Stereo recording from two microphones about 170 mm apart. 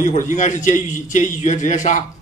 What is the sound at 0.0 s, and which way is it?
A man's voice, 45° left (ahead or behind).